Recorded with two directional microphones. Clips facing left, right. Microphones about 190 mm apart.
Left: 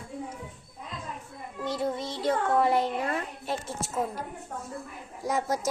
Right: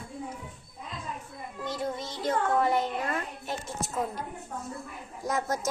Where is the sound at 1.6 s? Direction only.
30° left (ahead or behind).